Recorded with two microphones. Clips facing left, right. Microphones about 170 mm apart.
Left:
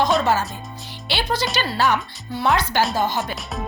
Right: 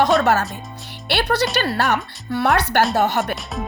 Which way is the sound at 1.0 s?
65° right (ahead or behind).